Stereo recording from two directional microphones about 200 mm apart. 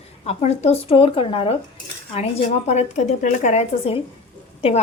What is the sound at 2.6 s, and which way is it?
Speech, 35° left (ahead or behind).